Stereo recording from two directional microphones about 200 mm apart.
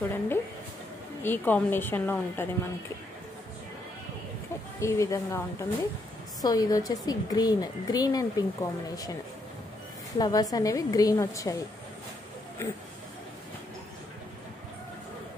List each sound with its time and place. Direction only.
0.0 s a woman's voice: 10° left (ahead or behind)
4.7 s a woman's voice: 15° left (ahead or behind)
10.1 s a woman's voice: 20° left (ahead or behind)